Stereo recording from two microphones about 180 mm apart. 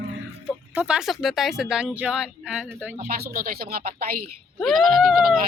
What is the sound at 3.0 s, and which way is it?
Speech, 55° right (ahead or behind).